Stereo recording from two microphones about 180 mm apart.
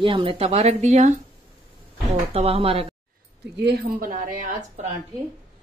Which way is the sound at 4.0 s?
50° right (ahead or behind).